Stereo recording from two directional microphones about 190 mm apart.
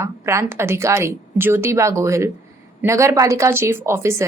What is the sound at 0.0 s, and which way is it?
A woman's voice, 15° right (ahead or behind).